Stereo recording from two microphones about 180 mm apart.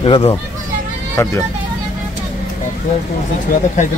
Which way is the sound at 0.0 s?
30° left (ahead or behind).